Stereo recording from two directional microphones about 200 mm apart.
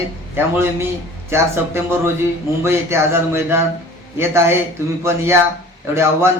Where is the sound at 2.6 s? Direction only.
15° right (ahead or behind).